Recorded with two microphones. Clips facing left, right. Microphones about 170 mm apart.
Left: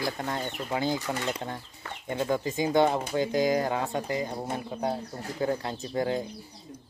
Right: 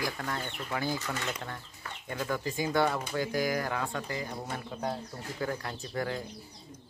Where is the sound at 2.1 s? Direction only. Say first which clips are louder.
Left 5 dB; 25° left (ahead or behind).